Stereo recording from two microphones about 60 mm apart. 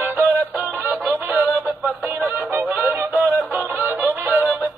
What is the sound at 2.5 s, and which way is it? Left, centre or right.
Music, right.